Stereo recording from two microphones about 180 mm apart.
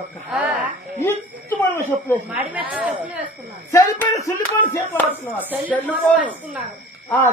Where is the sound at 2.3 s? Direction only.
5° right (ahead or behind).